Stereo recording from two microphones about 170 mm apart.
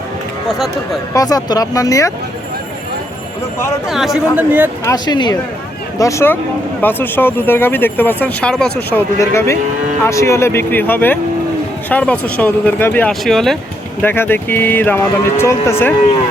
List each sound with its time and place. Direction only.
1.1 s speech: 20° left (ahead or behind)
3.8 s speech: centre (ahead or behind)
4.9 s speech: 25° left (ahead or behind); by 13.6 s centre (ahead or behind)
14.0 s speech: 10° left (ahead or behind)